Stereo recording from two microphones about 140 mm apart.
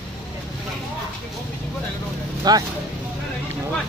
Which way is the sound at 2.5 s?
30° right (ahead or behind).